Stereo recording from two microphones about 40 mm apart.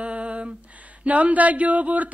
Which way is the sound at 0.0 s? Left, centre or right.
Right.